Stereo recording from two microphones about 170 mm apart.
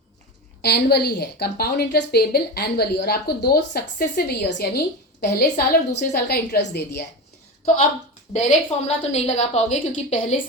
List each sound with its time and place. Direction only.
0.6 s a woman's voice: 70° left (ahead or behind)
8.3 s a woman's voice: 40° left (ahead or behind)